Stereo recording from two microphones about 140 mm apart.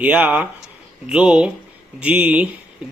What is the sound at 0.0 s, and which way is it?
A man's voice, 10° right (ahead or behind).